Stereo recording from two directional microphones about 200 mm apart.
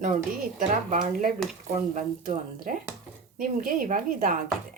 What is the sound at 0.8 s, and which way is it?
Speech, 40° right (ahead or behind).